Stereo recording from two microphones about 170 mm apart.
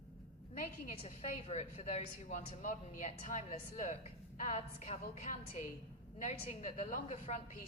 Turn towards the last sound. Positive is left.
turn(degrees=40)  # may be behind; listen again after turning